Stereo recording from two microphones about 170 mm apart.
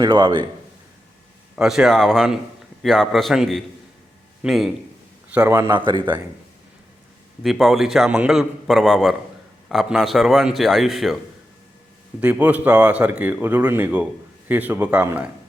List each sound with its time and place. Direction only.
0.0 s speech: 25° right (ahead or behind)
1.5 s a man's voice: 5° right (ahead or behind)
5.5 s speech: 20° right (ahead or behind)
7.4 s a man's voice: centre (ahead or behind)
12.2 s speech: 10° right (ahead or behind)